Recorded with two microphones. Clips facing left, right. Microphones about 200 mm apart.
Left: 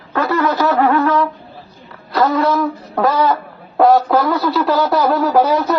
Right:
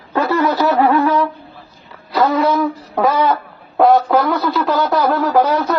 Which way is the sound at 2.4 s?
Centre (ahead or behind).